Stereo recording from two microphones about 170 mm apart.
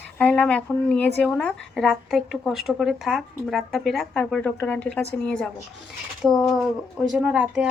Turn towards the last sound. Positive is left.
turn(degrees=-10)  # may be behind; listen again after turning